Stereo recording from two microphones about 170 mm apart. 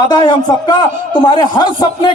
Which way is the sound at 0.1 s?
25° left (ahead or behind).